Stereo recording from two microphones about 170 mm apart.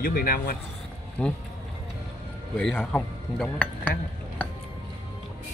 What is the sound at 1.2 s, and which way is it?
Speech, 5° left (ahead or behind).